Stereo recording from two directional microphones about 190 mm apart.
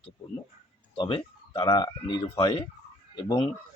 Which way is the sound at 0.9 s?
25° left (ahead or behind).